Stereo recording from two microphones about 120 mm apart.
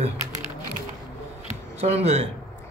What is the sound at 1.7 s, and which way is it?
Speech, 60° right (ahead or behind).